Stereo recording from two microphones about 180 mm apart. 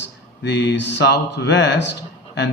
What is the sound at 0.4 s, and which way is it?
Speech, 70° left (ahead or behind).